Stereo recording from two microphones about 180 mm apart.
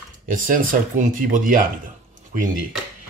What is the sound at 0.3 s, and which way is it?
Speech, 50° right (ahead or behind).